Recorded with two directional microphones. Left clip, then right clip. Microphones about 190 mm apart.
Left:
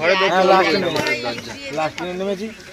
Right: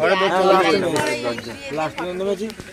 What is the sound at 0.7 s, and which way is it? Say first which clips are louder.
Speech: even; 40° right (ahead or behind).